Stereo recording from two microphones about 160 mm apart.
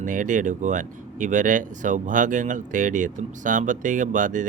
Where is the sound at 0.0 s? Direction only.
55° right (ahead or behind).